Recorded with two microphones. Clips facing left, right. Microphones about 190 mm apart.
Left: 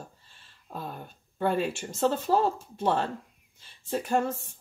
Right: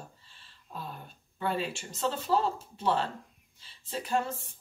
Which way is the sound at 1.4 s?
50° left (ahead or behind).